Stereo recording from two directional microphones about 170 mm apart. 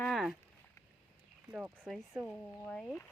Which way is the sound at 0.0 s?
Centre (ahead or behind).